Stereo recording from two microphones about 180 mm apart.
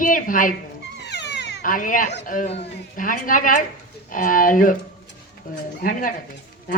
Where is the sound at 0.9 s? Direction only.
70° left (ahead or behind).